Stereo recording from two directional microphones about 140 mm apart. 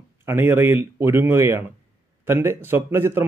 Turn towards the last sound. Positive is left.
turn(degrees=-15)  # may be behind; listen again after turning